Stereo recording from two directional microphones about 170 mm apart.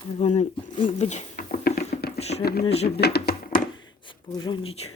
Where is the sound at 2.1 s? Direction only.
40° left (ahead or behind).